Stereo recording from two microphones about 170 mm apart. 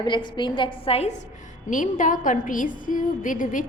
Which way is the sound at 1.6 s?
50° left (ahead or behind).